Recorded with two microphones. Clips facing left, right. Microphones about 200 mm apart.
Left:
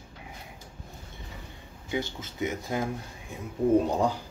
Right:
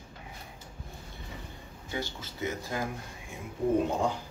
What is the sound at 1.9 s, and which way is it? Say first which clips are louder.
Speech: left 5 dB; 20° left (ahead or behind).